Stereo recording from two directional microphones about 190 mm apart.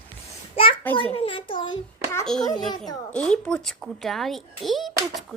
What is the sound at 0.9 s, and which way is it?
Speech, 25° left (ahead or behind).